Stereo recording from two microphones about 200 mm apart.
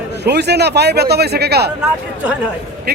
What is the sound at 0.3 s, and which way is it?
A man's voice, 55° right (ahead or behind).